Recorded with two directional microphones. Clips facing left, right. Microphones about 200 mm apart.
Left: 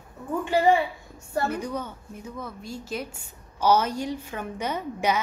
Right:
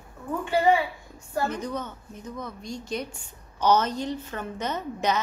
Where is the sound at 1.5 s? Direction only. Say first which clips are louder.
Left 1 dB; 10° left (ahead or behind).